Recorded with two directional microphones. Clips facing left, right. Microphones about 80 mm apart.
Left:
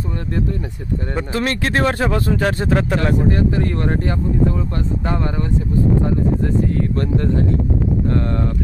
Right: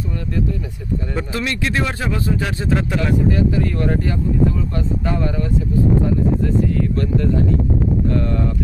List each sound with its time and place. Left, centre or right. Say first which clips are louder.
1.3 s speech: left 3 dB; left